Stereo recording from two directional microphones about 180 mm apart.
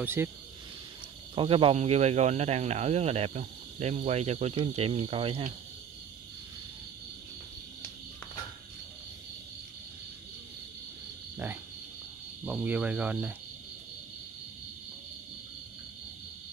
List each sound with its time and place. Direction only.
0.0 s speech: 10° right (ahead or behind)
1.3 s speech: 30° right (ahead or behind)
12.4 s speech: 10° right (ahead or behind)